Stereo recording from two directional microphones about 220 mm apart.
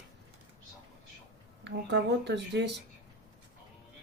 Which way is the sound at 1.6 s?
50° right (ahead or behind).